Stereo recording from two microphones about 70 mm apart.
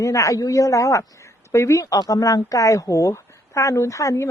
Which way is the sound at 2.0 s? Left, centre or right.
Left.